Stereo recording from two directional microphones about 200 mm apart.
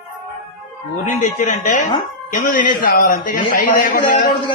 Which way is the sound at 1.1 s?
40° left (ahead or behind).